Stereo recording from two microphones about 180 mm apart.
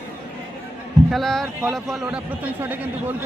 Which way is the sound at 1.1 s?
Centre (ahead or behind).